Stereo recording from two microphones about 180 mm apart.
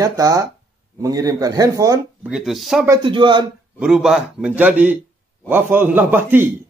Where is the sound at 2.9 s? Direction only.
25° right (ahead or behind).